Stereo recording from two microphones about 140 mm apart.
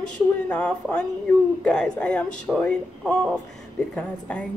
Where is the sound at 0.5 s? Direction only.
10° left (ahead or behind).